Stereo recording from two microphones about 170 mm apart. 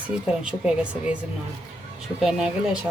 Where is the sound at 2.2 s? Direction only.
5° right (ahead or behind).